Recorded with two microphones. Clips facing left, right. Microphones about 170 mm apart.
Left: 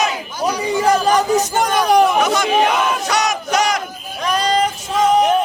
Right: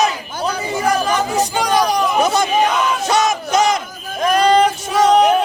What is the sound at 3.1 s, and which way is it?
Battle cry, 25° right (ahead or behind).